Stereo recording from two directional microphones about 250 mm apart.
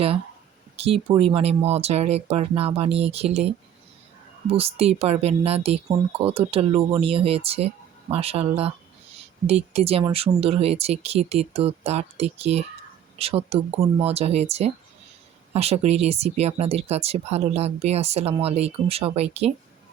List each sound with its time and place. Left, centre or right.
0.8 s speech: right